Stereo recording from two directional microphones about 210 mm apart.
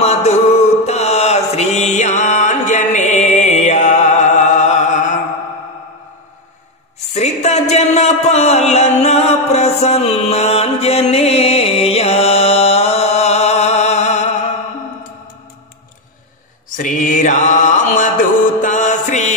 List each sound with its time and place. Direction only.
0.0 s music: 30° left (ahead or behind)
0.8 s mantra: 30° left (ahead or behind)
7.2 s a sound: 30° left (ahead or behind)
16.7 s mantra: 40° left (ahead or behind)
18.6 s music: 35° left (ahead or behind)